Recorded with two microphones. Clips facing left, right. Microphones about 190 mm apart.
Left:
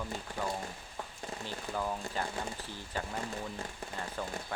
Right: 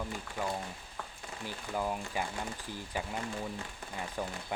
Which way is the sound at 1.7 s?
15° right (ahead or behind).